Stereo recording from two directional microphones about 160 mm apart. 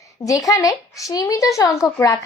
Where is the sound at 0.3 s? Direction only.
20° left (ahead or behind).